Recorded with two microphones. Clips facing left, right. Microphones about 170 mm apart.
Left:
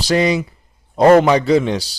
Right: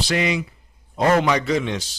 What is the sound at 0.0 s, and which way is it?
A man's voice, 35° left (ahead or behind).